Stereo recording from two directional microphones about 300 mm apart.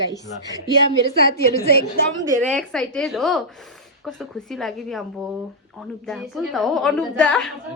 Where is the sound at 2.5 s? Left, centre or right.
Centre.